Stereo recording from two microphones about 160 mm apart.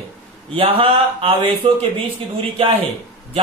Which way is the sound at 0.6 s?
35° right (ahead or behind).